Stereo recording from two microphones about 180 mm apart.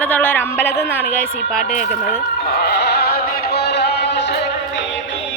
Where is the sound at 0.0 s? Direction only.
10° left (ahead or behind).